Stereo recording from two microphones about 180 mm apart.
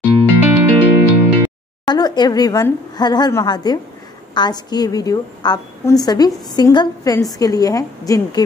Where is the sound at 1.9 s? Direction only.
25° left (ahead or behind).